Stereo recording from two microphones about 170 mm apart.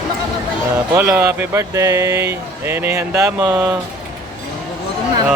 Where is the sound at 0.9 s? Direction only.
15° right (ahead or behind).